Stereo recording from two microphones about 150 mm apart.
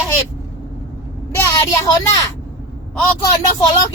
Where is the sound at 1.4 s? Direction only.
20° left (ahead or behind).